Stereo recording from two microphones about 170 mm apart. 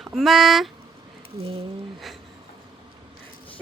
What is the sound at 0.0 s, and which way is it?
Speech, centre (ahead or behind).